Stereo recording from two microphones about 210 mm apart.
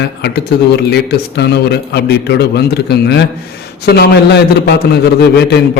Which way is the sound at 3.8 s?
50° left (ahead or behind).